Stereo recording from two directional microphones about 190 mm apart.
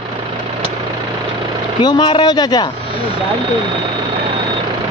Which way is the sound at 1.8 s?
25° left (ahead or behind).